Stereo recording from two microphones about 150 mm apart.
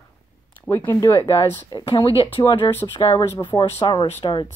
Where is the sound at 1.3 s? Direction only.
35° left (ahead or behind).